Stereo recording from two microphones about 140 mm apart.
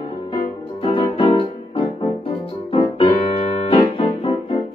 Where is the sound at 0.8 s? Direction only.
40° left (ahead or behind).